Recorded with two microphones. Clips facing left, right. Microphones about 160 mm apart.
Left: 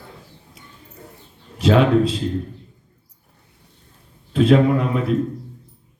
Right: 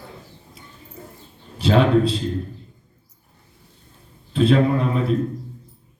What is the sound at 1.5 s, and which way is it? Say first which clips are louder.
Speech: left 1 dB; 30° right (ahead or behind).